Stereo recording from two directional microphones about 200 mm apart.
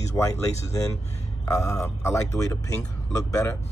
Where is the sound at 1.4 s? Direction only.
15° left (ahead or behind).